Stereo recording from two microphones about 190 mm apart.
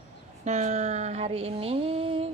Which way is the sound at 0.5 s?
35° right (ahead or behind).